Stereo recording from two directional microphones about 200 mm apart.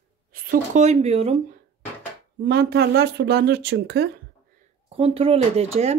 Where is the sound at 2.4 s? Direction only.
50° right (ahead or behind).